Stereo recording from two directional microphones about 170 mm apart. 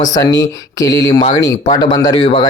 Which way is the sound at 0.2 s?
20° left (ahead or behind).